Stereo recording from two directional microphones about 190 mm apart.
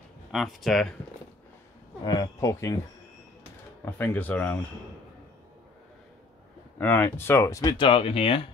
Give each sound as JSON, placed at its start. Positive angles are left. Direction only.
{"t": 0.3, "sound": "speech", "side_deg": 0}
{"t": 2.0, "sound": "speech", "side_deg": 20}
{"t": 3.8, "sound": "speech", "side_deg": 10}
{"t": 6.8, "sound": "speech", "side_deg": 10}